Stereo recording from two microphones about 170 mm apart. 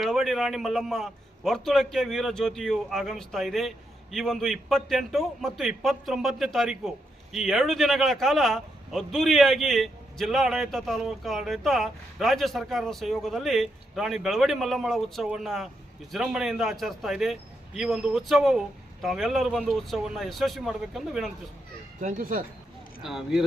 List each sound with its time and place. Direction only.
0.0 s a man's voice: centre (ahead or behind)
22.0 s speech: 55° right (ahead or behind)
23.0 s a man's voice: centre (ahead or behind)